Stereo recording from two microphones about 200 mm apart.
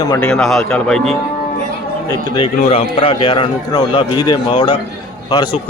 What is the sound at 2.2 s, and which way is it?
A man's voice, 25° left (ahead or behind).